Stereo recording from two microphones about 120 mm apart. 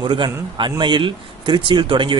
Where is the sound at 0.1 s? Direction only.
40° right (ahead or behind).